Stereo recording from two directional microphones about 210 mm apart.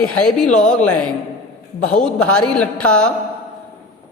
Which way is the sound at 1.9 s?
5° left (ahead or behind).